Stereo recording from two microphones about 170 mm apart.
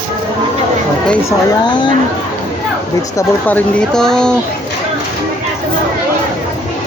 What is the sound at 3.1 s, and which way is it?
Speech, 10° left (ahead or behind).